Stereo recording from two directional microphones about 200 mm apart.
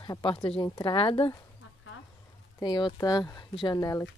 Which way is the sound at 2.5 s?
20° left (ahead or behind).